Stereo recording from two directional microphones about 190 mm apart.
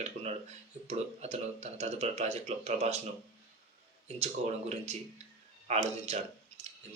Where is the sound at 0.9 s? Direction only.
35° right (ahead or behind).